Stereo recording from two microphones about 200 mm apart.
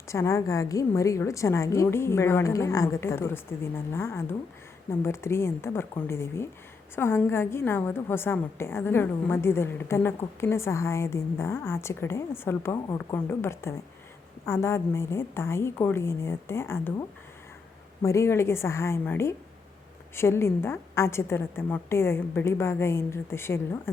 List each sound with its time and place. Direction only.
0.1 s a woman's voice: 15° left (ahead or behind)
18.0 s a woman's voice: 15° left (ahead or behind)